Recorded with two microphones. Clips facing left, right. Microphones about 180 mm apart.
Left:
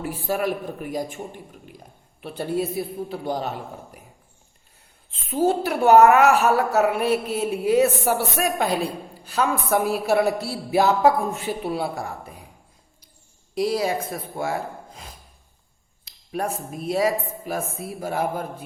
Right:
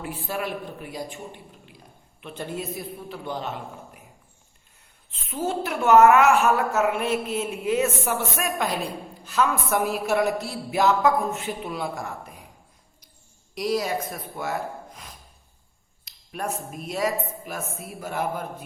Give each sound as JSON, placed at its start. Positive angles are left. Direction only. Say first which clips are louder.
{"t": 0.0, "sound": "a man's voice", "louder": "left 5 dB", "side_deg": 40}
{"t": 2.2, "sound": "a woman's voice", "louder": "left 7 dB", "side_deg": 35}
{"t": 5.3, "sound": "a woman's voice", "louder": "left 6 dB", "side_deg": 35}
{"t": 13.6, "sound": "a woman's voice", "louder": "left 3 dB", "side_deg": 30}